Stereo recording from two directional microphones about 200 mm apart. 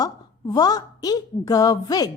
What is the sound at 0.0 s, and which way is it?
A woman's voice, 20° left (ahead or behind).